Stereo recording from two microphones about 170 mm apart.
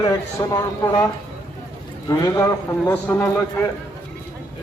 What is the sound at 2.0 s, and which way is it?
A man's voice, 20° left (ahead or behind).